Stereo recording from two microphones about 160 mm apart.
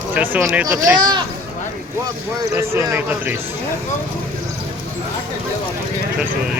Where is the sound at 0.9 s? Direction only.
25° right (ahead or behind).